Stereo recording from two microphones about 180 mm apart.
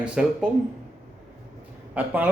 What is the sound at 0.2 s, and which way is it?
Speech, 5° right (ahead or behind).